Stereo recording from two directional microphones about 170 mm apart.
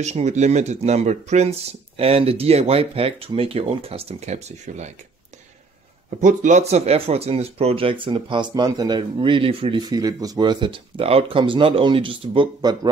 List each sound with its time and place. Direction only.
0.0 s speech: 45° right (ahead or behind)
6.0 s speech: 45° right (ahead or behind); by 12.9 s 25° right (ahead or behind)